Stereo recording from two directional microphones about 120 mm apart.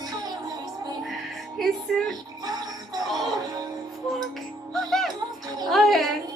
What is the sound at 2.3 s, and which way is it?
Music, 35° right (ahead or behind).